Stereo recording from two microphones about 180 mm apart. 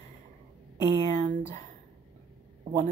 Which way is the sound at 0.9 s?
40° right (ahead or behind).